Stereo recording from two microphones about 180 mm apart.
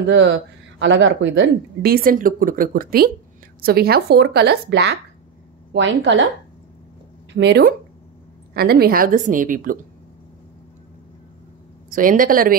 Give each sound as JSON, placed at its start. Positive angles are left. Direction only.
{"t": 0.0, "sound": "speech", "side_deg": -85}
{"t": 5.7, "sound": "a woman's voice", "side_deg": -90}
{"t": 7.3, "sound": "speech", "side_deg": -70}
{"t": 8.5, "sound": "a woman's voice", "side_deg": -60}
{"t": 11.9, "sound": "a woman's voice", "side_deg": -50}